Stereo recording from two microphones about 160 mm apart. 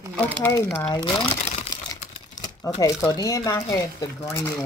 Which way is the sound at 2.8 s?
20° left (ahead or behind).